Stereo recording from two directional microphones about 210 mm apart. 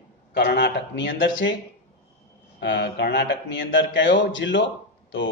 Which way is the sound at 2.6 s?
55° left (ahead or behind).